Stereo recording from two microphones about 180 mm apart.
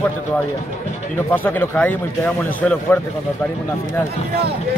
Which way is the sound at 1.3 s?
10° left (ahead or behind).